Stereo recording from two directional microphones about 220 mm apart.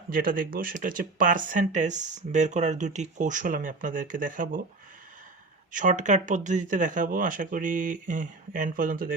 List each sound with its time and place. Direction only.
0.1 s speech: 40° right (ahead or behind)
5.7 s speech: 35° right (ahead or behind)